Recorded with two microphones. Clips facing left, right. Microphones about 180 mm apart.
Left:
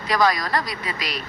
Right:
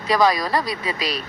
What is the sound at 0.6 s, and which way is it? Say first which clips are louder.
Speech: right 4 dB; 30° right (ahead or behind).